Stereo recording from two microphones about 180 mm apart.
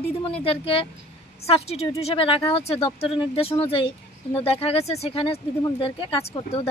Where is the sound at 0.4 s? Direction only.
30° left (ahead or behind).